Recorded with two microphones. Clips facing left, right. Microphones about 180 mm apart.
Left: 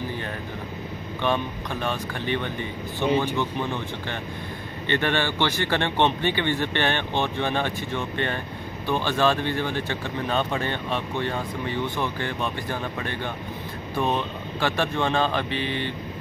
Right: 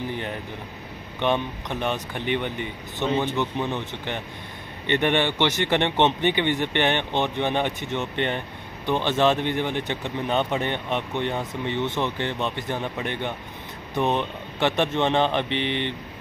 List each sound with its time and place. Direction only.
1.2 s speech: 20° right (ahead or behind)